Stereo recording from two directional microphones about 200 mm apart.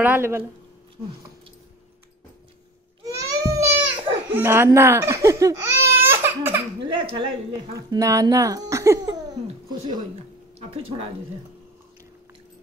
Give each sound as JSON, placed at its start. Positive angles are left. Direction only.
{"t": 0.0, "sound": "a woman's voice", "side_deg": -10}
{"t": 3.0, "sound": "baby cry", "side_deg": -15}
{"t": 6.8, "sound": "a woman's voice", "side_deg": -20}